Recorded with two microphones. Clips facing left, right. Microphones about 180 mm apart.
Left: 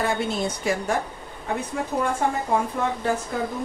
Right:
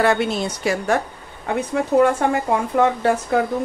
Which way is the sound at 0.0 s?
75° right (ahead or behind).